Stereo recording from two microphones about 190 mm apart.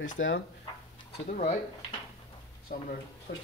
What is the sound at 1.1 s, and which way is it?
Speech, 35° left (ahead or behind).